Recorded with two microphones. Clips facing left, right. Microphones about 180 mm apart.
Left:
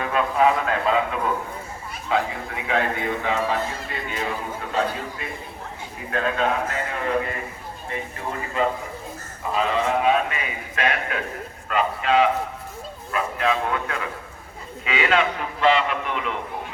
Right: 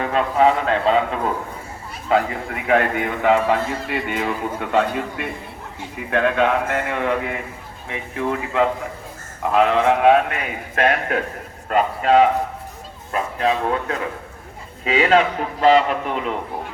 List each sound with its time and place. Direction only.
0.0 s a man's voice: 30° right (ahead or behind)
2.6 s a man's voice: 60° right (ahead or behind); by 12.3 s 45° right (ahead or behind)
13.4 s a man's voice: 35° right (ahead or behind)